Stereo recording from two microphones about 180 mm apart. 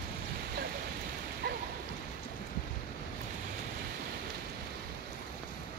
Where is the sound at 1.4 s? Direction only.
65° right (ahead or behind).